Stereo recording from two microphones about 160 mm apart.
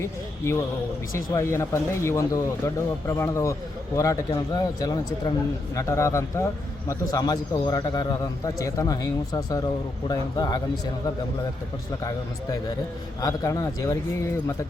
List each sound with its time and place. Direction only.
0.0 s a man's voice: 15° left (ahead or behind)
13.2 s a man's voice: 20° left (ahead or behind)